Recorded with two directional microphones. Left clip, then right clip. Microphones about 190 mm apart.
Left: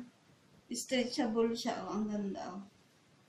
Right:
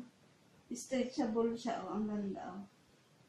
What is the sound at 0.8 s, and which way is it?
Speech, 15° left (ahead or behind).